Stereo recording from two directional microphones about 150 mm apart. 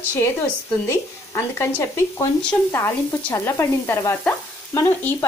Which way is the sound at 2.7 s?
15° left (ahead or behind).